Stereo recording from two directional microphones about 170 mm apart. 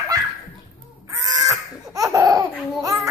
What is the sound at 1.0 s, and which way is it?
Laughter, 20° right (ahead or behind).